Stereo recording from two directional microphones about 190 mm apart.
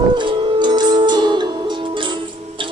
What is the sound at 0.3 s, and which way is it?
Music, 25° right (ahead or behind).